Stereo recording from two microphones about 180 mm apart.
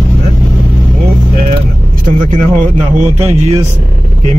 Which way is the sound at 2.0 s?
45° right (ahead or behind).